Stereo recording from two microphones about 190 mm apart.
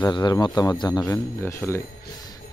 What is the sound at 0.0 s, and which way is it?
Speech, 25° left (ahead or behind).